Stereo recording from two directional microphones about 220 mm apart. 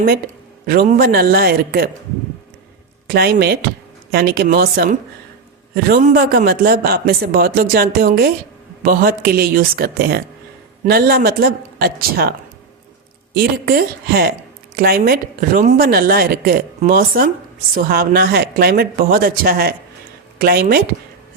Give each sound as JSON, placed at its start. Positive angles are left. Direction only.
{"t": 0.6, "sound": "a man's voice", "side_deg": -40}
{"t": 3.1, "sound": "a man's voice", "side_deg": -45}
{"t": 13.3, "sound": "a man's voice", "side_deg": -40}